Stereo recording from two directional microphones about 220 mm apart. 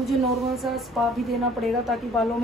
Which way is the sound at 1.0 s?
Centre (ahead or behind).